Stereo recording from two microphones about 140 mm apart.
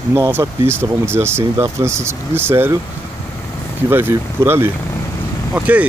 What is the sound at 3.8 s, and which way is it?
Speech, 15° right (ahead or behind).